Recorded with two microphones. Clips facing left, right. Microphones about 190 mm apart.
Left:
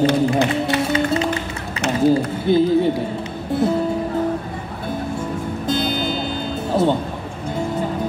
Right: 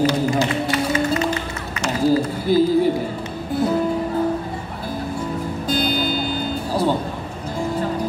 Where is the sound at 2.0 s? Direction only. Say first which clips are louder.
Left 1 dB; 25° left (ahead or behind).